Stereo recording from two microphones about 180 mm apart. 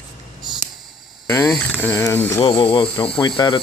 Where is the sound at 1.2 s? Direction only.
20° left (ahead or behind).